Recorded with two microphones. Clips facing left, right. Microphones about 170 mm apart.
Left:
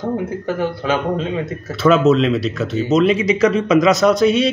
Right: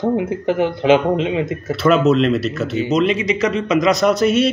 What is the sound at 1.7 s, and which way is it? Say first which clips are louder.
Speech: left 1 dB; centre (ahead or behind).